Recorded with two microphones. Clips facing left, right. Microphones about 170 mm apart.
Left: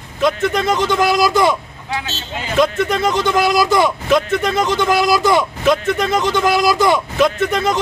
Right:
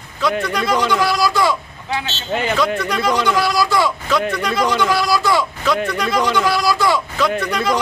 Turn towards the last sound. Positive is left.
turn(degrees=25)  # may be behind; listen again after turning